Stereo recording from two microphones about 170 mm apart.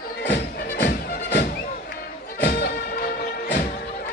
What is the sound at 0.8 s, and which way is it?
Music, 60° left (ahead or behind).